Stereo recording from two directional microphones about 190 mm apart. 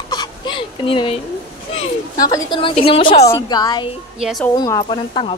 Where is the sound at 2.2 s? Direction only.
20° left (ahead or behind).